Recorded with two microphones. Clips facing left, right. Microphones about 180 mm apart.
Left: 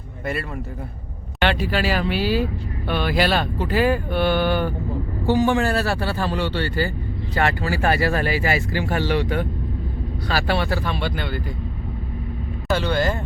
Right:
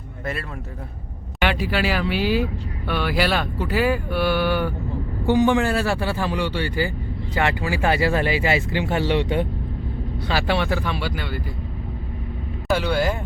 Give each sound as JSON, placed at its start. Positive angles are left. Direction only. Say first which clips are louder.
{"t": 1.5, "sound": "a man's voice", "louder": "left 1 dB", "side_deg": -15}
{"t": 4.1, "sound": "speech", "louder": "left 1 dB", "side_deg": 20}
{"t": 5.2, "sound": "a man's voice", "louder": "right 1 dB", "side_deg": -15}
{"t": 12.7, "sound": "a man's voice", "louder": "even", "side_deg": -10}